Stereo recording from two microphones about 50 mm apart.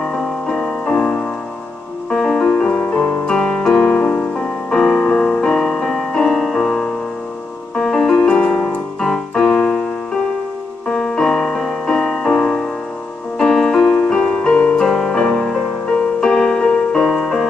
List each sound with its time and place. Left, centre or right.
0.0 s music: centre
0.8 s music: centre
3.3 s piano: centre
5.0 s music: centre
7.7 s keyboard: centre
9.6 s keyboard: left
10.9 s music: centre
14.8 s music: centre
17.0 s music: centre